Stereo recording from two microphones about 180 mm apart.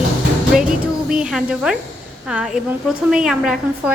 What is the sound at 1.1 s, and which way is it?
Speech, 5° right (ahead or behind).